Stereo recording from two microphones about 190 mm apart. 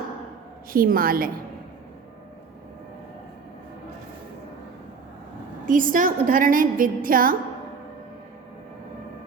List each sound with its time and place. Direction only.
0.7 s a woman's voice: 50° right (ahead or behind)
5.6 s a woman's voice: 45° right (ahead or behind)